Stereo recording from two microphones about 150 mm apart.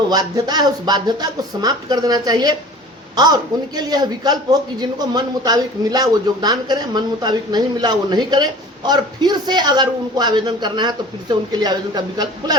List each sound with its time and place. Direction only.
0.1 s a man's voice: 25° right (ahead or behind)